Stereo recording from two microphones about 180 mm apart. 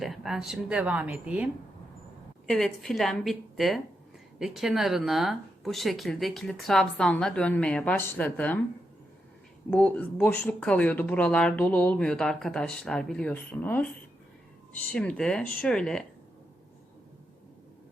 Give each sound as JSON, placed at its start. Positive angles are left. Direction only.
{"t": 0.0, "sound": "speech", "side_deg": 0}
{"t": 2.5, "sound": "speech", "side_deg": 0}
{"t": 9.6, "sound": "speech", "side_deg": 5}